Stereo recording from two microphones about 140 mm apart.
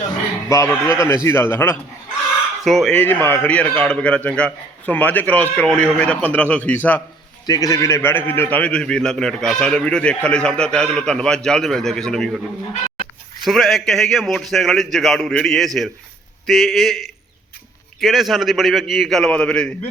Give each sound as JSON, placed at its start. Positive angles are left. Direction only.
{"t": 0.4, "sound": "a man's voice", "side_deg": 20}
{"t": 2.6, "sound": "a man's voice", "side_deg": 0}
{"t": 2.9, "sound": "a man's voice", "side_deg": 15}
{"t": 7.4, "sound": "a man's voice", "side_deg": 25}
{"t": 13.4, "sound": "a man's voice", "side_deg": 0}